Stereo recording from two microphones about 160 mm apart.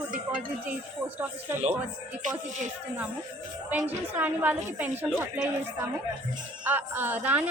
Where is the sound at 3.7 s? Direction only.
10° right (ahead or behind).